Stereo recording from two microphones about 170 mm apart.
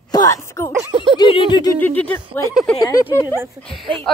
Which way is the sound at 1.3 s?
25° left (ahead or behind).